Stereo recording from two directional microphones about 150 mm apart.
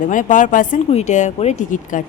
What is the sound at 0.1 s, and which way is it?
Speech, 60° left (ahead or behind).